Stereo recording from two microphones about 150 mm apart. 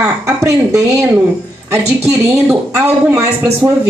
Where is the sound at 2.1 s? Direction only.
10° right (ahead or behind).